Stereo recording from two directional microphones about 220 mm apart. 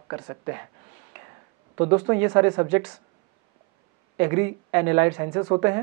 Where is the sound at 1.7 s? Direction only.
20° right (ahead or behind).